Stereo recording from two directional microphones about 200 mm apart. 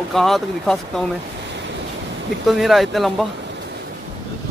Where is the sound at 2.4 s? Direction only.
Centre (ahead or behind).